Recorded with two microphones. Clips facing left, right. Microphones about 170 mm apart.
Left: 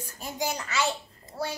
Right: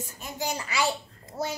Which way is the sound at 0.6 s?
10° right (ahead or behind).